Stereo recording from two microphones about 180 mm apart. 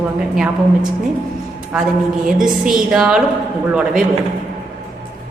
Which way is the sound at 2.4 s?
Centre (ahead or behind).